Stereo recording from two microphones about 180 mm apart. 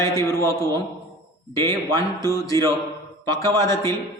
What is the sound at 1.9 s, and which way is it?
Music, 20° left (ahead or behind).